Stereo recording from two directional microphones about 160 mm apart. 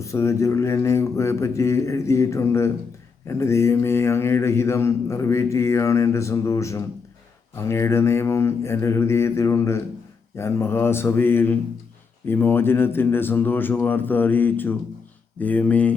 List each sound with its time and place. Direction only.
0.0 s speech: 20° left (ahead or behind)